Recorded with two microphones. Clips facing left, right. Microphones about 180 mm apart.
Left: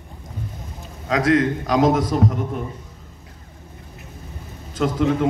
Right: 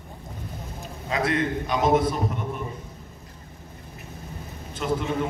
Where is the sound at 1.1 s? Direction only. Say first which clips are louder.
Left 7 dB; 90° left.